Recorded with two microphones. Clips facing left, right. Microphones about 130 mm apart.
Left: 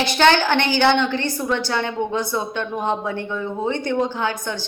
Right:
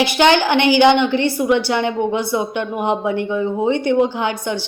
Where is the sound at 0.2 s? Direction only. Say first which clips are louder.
Right 2 dB; 15° right (ahead or behind).